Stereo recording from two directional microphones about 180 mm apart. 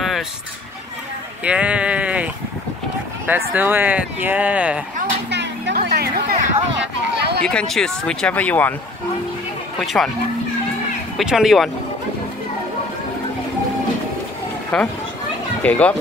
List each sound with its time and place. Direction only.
1.4 s sheep: 5° right (ahead or behind)
3.3 s speech: 10° right (ahead or behind)
5.3 s speech: 70° right (ahead or behind)
7.2 s a sound: 65° right (ahead or behind)
7.4 s speech: 5° left (ahead or behind)
9.8 s speech: centre (ahead or behind)
11.1 s speech: centre (ahead or behind)
14.7 s a child's voice: 5° left (ahead or behind)